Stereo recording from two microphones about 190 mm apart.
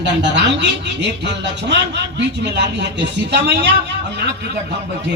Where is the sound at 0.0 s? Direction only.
65° right (ahead or behind).